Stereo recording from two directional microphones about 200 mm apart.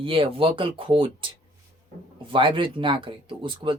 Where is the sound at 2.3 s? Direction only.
25° right (ahead or behind).